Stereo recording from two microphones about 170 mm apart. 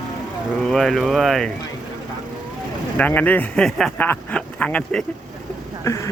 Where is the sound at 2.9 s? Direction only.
10° left (ahead or behind).